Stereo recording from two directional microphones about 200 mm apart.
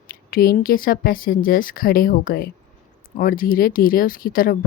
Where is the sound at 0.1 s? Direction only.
45° left (ahead or behind).